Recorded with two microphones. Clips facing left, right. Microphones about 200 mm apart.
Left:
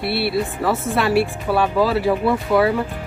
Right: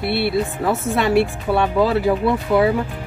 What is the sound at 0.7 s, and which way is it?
Speech, centre (ahead or behind).